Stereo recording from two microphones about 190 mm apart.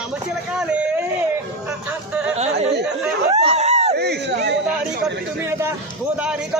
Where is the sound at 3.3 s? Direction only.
35° right (ahead or behind).